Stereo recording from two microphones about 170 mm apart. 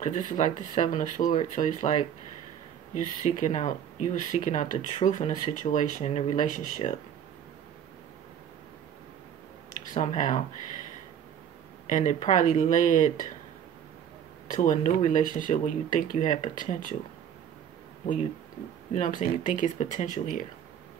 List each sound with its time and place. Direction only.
0.0 s speech: 45° left (ahead or behind)
9.9 s speech: 45° left (ahead or behind)
11.9 s speech: 45° left (ahead or behind)
14.5 s speech: 45° left (ahead or behind)
18.9 s speech: 50° left (ahead or behind)